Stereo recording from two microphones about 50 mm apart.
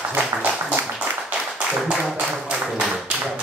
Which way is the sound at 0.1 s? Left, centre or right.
Right.